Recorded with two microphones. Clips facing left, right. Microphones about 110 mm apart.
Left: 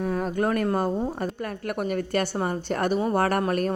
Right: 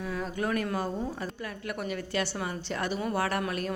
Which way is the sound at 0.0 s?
45° left (ahead or behind).